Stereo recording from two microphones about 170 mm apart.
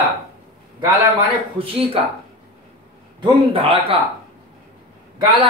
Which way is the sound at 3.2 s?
30° right (ahead or behind).